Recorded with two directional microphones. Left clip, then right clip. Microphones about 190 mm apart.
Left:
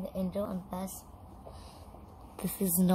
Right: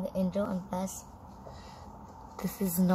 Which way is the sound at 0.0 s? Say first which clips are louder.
Right 3 dB; centre (ahead or behind).